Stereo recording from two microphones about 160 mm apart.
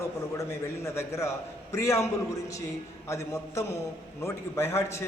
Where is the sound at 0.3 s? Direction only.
20° left (ahead or behind).